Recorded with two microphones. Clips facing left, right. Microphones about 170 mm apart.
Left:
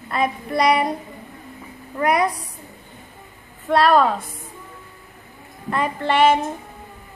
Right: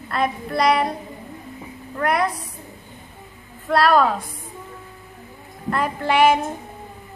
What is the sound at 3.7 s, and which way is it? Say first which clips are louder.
Speech: left 1 dB; centre (ahead or behind).